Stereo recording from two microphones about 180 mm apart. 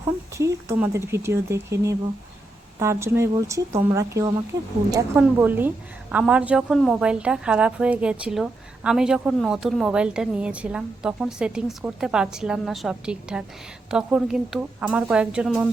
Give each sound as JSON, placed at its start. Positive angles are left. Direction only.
{"t": 0.0, "sound": "a woman's voice", "side_deg": -15}